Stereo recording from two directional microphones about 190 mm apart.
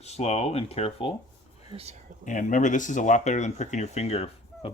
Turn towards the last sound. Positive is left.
turn(degrees=35)  # may be behind; listen again after turning